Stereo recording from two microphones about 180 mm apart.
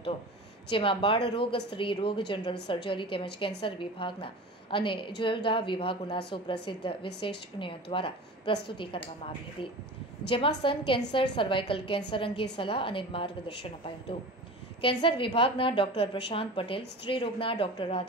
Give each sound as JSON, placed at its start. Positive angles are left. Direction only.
{"t": 0.7, "sound": "a woman's voice", "side_deg": 30}